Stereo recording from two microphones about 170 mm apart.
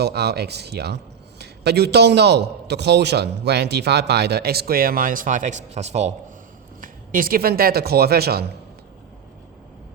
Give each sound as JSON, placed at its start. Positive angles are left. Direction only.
{"t": 0.0, "sound": "a man's voice", "side_deg": -70}
{"t": 6.8, "sound": "speech", "side_deg": -55}